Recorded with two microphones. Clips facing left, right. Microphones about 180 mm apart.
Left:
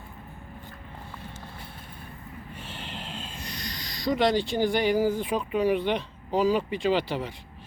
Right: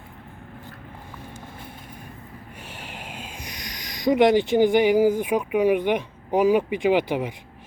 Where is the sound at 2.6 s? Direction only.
10° right (ahead or behind).